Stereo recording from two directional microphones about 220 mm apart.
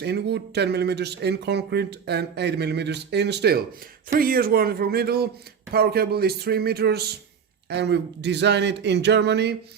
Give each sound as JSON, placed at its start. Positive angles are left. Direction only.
{"t": 0.0, "sound": "speech", "side_deg": -50}